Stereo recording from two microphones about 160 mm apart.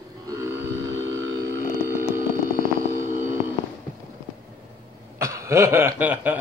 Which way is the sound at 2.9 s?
55° right (ahead or behind).